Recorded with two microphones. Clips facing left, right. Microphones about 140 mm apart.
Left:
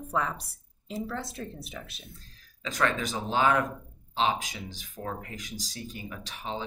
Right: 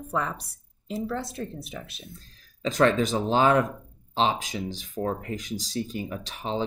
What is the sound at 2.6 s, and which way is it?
Speech, 30° right (ahead or behind).